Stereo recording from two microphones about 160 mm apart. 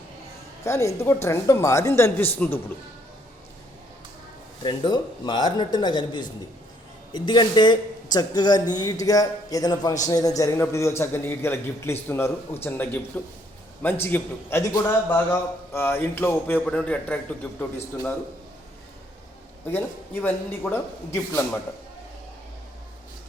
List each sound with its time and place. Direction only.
0.6 s a man's voice: 20° left (ahead or behind)
4.6 s a woman's voice: 30° left (ahead or behind); by 17.7 s 10° left (ahead or behind)
20.2 s a man's voice: 15° left (ahead or behind)